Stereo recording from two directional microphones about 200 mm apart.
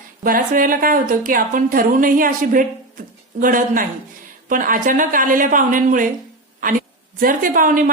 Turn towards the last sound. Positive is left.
turn(degrees=-45)  # may be behind; listen again after turning